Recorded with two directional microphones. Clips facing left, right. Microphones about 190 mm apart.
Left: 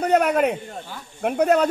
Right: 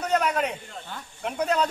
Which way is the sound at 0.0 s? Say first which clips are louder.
Left 6 dB; 55° left (ahead or behind).